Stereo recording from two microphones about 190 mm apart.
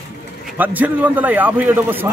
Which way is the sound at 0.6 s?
10° right (ahead or behind).